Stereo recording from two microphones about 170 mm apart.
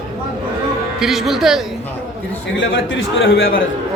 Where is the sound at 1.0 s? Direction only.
Centre (ahead or behind).